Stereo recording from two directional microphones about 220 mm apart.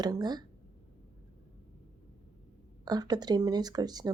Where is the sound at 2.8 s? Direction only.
20° right (ahead or behind).